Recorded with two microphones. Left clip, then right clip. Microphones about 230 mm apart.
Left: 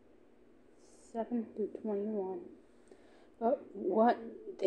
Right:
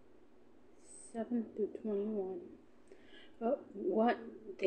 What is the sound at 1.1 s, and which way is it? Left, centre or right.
Speech, centre.